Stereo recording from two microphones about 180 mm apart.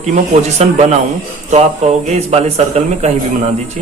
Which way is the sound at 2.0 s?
35° right (ahead or behind).